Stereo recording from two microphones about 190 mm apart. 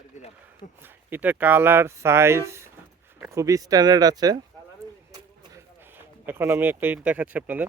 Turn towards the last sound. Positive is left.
turn(degrees=-10)  # may be behind; listen again after turning